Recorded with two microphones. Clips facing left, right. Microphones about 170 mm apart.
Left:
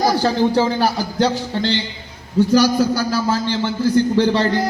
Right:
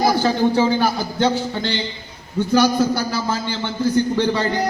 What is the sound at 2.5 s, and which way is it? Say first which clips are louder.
A man's voice: right 1 dB; 40° left (ahead or behind).